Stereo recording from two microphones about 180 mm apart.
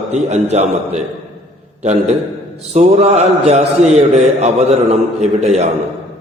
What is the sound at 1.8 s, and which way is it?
A man's voice, 40° right (ahead or behind).